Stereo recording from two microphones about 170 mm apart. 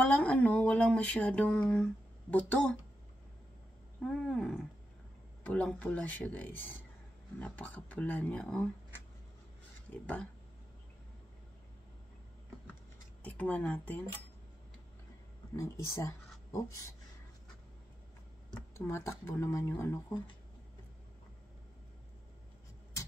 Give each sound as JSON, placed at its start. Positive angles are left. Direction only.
{"t": 0.0, "sound": "a sound", "side_deg": 10}
{"t": 2.3, "sound": "speech", "side_deg": 10}
{"t": 4.0, "sound": "wild animals", "side_deg": 5}
{"t": 5.4, "sound": "speech", "side_deg": 10}
{"t": 13.2, "sound": "speech", "side_deg": 10}
{"t": 15.5, "sound": "speech", "side_deg": 20}
{"t": 18.8, "sound": "speech", "side_deg": 15}